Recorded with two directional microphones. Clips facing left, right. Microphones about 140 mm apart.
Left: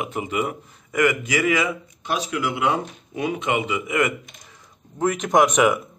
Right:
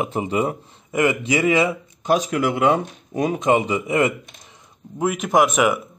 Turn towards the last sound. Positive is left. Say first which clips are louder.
# even
turn(degrees=-5)  # may be behind; listen again after turning